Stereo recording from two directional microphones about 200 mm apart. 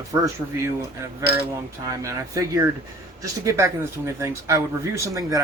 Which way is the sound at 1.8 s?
15° right (ahead or behind).